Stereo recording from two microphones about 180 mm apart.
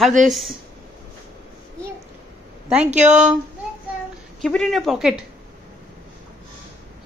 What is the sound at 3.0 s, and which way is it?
Speech, 40° right (ahead or behind).